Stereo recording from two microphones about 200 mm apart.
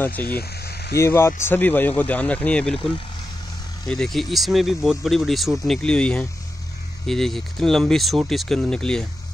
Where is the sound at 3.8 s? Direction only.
Centre (ahead or behind).